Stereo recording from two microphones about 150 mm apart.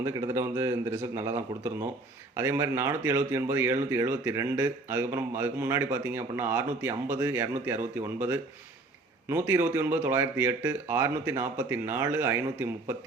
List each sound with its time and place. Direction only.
0.0 s a man's voice: 20° right (ahead or behind)